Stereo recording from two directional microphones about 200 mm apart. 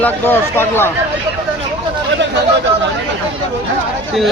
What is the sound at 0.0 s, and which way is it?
Speech, 10° left (ahead or behind).